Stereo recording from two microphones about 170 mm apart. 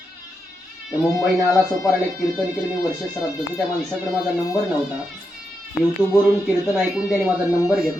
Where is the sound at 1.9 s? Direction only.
5° right (ahead or behind).